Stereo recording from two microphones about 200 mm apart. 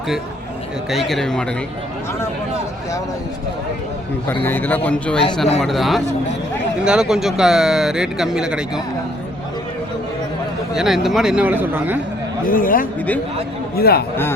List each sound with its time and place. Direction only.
0.9 s speech: centre (ahead or behind)
4.4 s a man's voice: 10° left (ahead or behind)
10.8 s speech: centre (ahead or behind)
12.5 s speech: 45° left (ahead or behind)